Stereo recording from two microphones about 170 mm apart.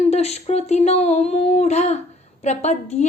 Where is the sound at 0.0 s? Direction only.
40° left (ahead or behind).